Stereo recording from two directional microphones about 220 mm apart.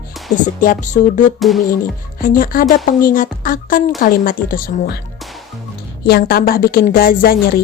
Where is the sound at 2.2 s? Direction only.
40° left (ahead or behind).